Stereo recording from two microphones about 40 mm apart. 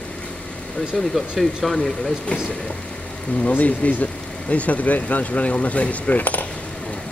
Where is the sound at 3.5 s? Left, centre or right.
Left.